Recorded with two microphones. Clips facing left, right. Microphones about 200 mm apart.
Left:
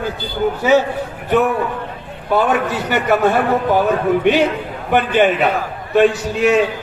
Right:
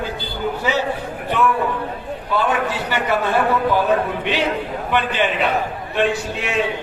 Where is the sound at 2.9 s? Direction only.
45° left (ahead or behind).